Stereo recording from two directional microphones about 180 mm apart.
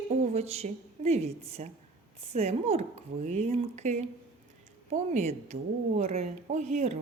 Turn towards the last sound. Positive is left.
turn(degrees=-40)  # may be behind; listen again after turning